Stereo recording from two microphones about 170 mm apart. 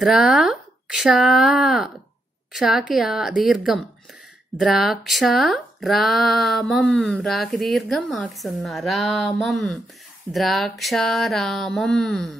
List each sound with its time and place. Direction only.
0.0 s speech: centre (ahead or behind)